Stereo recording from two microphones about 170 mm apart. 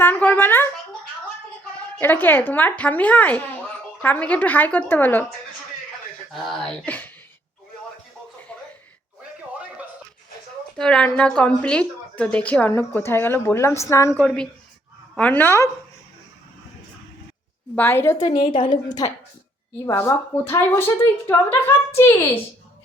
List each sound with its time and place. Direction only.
0.0 s a woman's voice: 10° left (ahead or behind)
2.0 s a woman's voice: 10° left (ahead or behind)
6.3 s a woman's voice: centre (ahead or behind)
10.8 s a woman's voice: 5° left (ahead or behind)
14.2 s a woman's voice: 5° left (ahead or behind)
17.7 s a woman's voice: 10° left (ahead or behind)
18.3 s a woman's voice: 30° left (ahead or behind); by 22.1 s 15° left (ahead or behind)